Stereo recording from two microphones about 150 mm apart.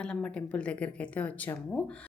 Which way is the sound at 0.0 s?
5° left (ahead or behind).